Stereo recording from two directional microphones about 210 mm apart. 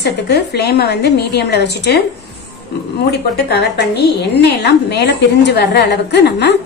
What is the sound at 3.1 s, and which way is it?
A woman's voice, 50° left (ahead or behind).